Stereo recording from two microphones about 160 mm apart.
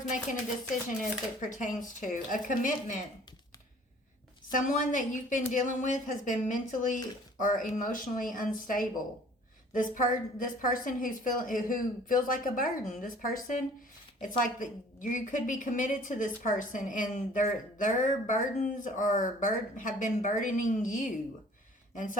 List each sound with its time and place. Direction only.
1.4 s a woman's voice: 50° left (ahead or behind)
4.5 s a woman's voice: 55° left (ahead or behind)